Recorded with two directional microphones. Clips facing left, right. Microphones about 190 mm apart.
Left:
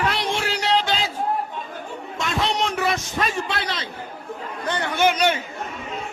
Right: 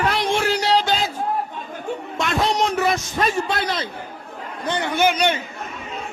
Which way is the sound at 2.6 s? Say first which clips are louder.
Right 3 dB; 40° right (ahead or behind).